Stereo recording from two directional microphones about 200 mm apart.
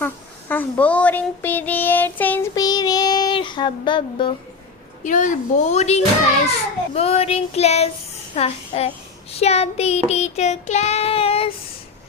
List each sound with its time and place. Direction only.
0.0 s child singing: 10° left (ahead or behind)
5.0 s child singing: 40° left (ahead or behind)